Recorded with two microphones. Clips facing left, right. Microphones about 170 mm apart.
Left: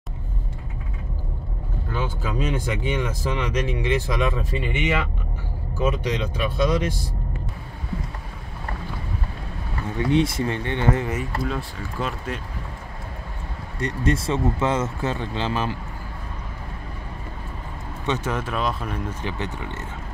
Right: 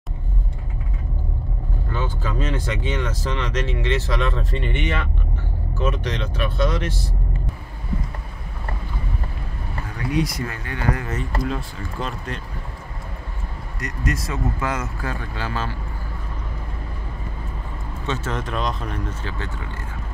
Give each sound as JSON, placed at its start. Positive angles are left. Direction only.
{"t": 1.9, "sound": "speech", "side_deg": 10}
{"t": 9.8, "sound": "speech", "side_deg": 25}
{"t": 11.4, "sound": "speech", "side_deg": 0}
{"t": 13.7, "sound": "speech", "side_deg": 30}
{"t": 18.0, "sound": "speech", "side_deg": 15}
{"t": 19.2, "sound": "speech", "side_deg": 20}